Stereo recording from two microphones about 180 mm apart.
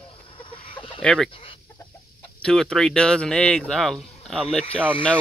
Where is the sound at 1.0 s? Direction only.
5° left (ahead or behind).